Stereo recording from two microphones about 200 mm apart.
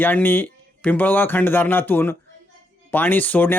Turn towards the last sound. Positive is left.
turn(degrees=10)  # may be behind; listen again after turning